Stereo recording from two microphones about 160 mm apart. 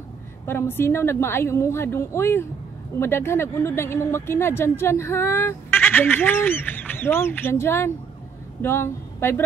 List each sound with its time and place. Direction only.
0.5 s speech: 15° left (ahead or behind)